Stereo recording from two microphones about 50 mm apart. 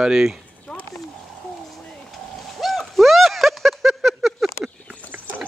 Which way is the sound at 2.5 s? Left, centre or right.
Centre.